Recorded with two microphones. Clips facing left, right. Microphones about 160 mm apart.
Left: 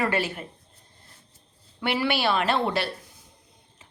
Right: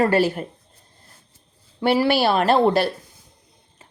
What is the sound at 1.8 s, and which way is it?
A woman's voice, 35° right (ahead or behind).